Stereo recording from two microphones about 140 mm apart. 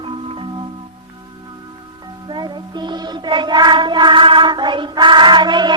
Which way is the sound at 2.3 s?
35° right (ahead or behind).